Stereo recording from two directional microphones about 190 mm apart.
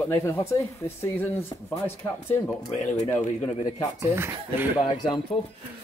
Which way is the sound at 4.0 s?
15° right (ahead or behind).